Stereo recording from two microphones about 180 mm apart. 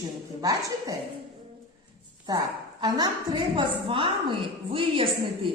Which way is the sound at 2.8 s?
25° right (ahead or behind).